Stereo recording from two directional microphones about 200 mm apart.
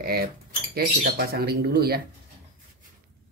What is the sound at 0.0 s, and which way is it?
Speech, 50° right (ahead or behind).